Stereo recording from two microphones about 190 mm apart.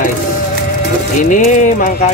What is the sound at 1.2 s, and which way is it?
Music, 45° left (ahead or behind).